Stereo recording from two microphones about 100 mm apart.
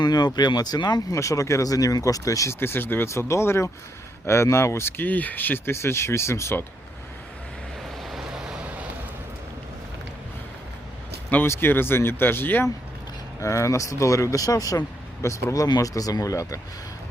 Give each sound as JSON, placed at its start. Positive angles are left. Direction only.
{"t": 0.0, "sound": "speech", "side_deg": 45}
{"t": 1.1, "sound": "speech", "side_deg": 30}
{"t": 8.0, "sound": "vehicle", "side_deg": -5}
{"t": 11.3, "sound": "speech", "side_deg": 20}